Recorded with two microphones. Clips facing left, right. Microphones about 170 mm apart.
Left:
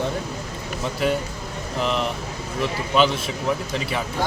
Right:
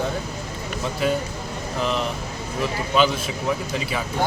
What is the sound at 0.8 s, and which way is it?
Speech, centre (ahead or behind).